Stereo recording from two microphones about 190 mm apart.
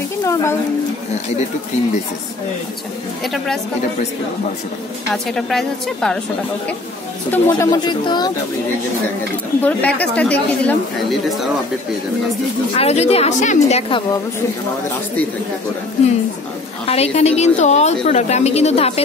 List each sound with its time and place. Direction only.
0.2 s a woman's voice: 15° left (ahead or behind)
5.1 s a woman's voice: centre (ahead or behind)
7.2 s speech: 10° left (ahead or behind)
9.6 s speech: 10° left (ahead or behind)
12.7 s a woman's voice: 35° left (ahead or behind)
16.8 s a woman's voice: 35° left (ahead or behind)